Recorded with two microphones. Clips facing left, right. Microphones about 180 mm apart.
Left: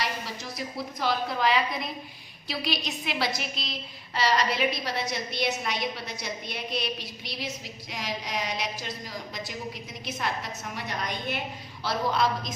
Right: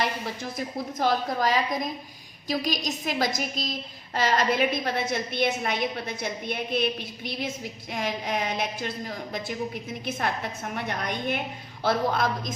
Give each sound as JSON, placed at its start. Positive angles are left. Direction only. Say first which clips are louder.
{"t": 0.0, "sound": "a woman's voice", "louder": "right 4 dB", "side_deg": -50}